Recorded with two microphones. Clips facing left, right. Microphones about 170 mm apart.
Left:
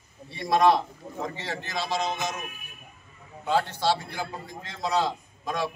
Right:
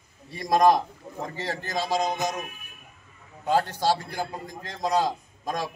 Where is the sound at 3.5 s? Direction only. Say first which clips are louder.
Right 1 dB; 40° right (ahead or behind).